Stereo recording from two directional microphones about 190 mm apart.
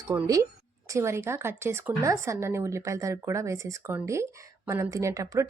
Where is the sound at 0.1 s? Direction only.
15° right (ahead or behind).